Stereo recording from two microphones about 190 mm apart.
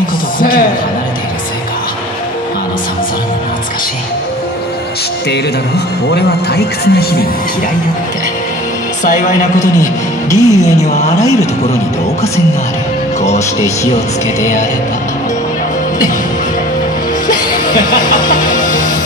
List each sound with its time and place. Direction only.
0.4 s a sound: 50° left (ahead or behind)
6.1 s speech: 55° left (ahead or behind)
10.3 s a woman's voice: 15° left (ahead or behind)
18.3 s music: 45° left (ahead or behind)